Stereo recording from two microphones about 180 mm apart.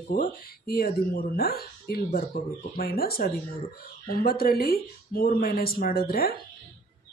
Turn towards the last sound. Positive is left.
turn(degrees=55)  # may be behind; listen again after turning